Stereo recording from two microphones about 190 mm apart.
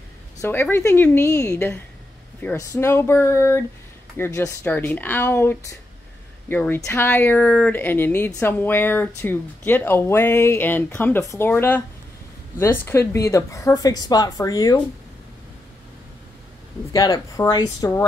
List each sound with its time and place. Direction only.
0.4 s speech: 10° left (ahead or behind)
16.9 s speech: 20° left (ahead or behind)